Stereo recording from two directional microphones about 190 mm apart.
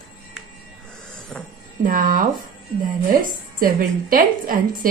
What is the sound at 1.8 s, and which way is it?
Speech, 45° right (ahead or behind).